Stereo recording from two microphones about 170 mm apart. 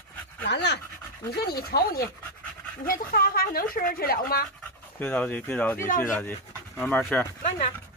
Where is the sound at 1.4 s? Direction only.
65° left (ahead or behind).